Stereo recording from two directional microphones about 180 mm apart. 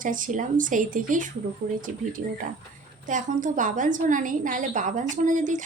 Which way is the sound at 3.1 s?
45° right (ahead or behind).